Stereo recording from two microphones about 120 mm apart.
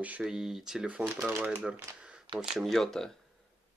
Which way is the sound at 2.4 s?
Centre (ahead or behind).